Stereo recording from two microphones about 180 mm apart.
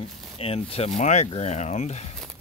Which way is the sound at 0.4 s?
30° left (ahead or behind).